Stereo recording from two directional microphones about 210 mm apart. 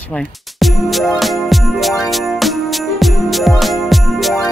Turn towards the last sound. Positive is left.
turn(degrees=0)  # may be behind; listen again after turning